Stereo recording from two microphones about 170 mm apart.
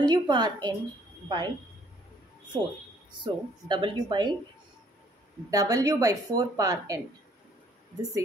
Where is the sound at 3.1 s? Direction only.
25° right (ahead or behind).